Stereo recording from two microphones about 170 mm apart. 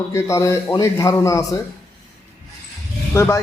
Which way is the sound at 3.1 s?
15° left (ahead or behind).